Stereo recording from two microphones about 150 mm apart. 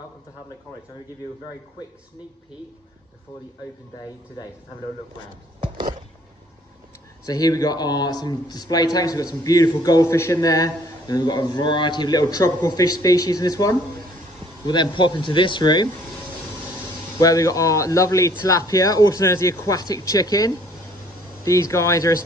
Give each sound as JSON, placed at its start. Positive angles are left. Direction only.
{"t": 7.2, "sound": "a man's voice", "side_deg": 25}
{"t": 17.2, "sound": "a man's voice", "side_deg": 25}